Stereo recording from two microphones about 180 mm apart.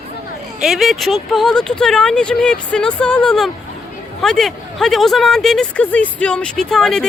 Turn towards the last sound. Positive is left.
turn(degrees=5)  # may be behind; listen again after turning